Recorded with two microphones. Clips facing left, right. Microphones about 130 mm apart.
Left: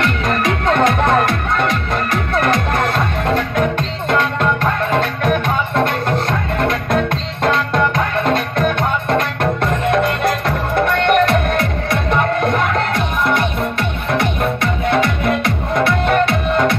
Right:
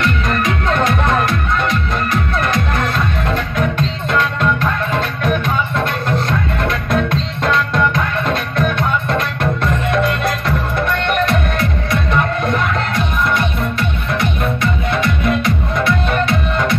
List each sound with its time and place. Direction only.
0.0 s music: 60° left (ahead or behind)
6.7 s music: 45° left (ahead or behind)
10.8 s music: 60° left (ahead or behind)